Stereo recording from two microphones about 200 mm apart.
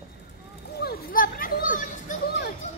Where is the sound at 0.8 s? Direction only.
50° left (ahead or behind).